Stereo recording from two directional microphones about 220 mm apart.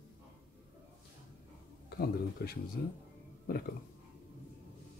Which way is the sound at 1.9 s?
45° left (ahead or behind).